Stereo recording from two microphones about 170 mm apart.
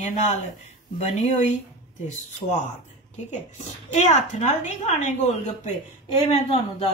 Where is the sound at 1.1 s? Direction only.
45° left (ahead or behind).